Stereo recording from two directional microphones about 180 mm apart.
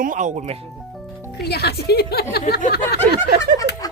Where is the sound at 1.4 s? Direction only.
65° left (ahead or behind).